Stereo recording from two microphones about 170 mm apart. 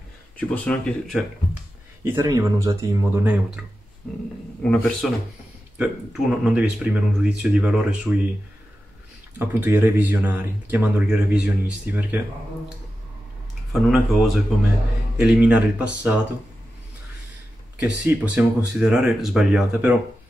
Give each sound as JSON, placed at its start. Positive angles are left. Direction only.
{"t": 0.4, "sound": "speech", "side_deg": 10}
{"t": 2.0, "sound": "speech", "side_deg": -15}
{"t": 5.8, "sound": "speech", "side_deg": -5}
{"t": 9.4, "sound": "speech", "side_deg": -10}
{"t": 13.7, "sound": "speech", "side_deg": 0}
{"t": 18.0, "sound": "speech", "side_deg": -5}